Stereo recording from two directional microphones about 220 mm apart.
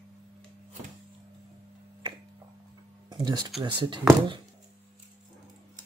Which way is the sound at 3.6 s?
20° right (ahead or behind).